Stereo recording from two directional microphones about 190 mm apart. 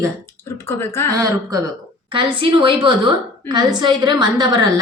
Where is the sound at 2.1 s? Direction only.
25° right (ahead or behind).